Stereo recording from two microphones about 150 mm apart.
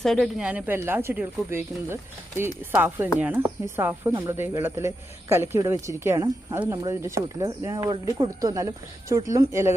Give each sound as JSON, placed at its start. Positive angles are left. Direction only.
{"t": 0.0, "sound": "speech", "side_deg": 0}